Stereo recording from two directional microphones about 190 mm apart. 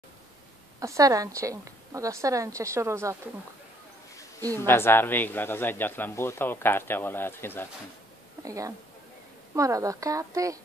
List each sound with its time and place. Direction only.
0.7 s a woman's voice: 15° right (ahead or behind)
4.6 s a man's voice: 10° left (ahead or behind)
8.5 s a woman's voice: 15° right (ahead or behind)